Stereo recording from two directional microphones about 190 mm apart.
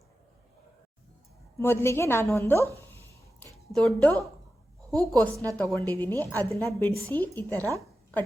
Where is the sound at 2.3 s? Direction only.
15° left (ahead or behind).